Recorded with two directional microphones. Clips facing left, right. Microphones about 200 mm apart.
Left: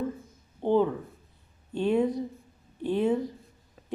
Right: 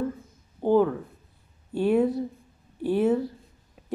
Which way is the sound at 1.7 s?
10° right (ahead or behind).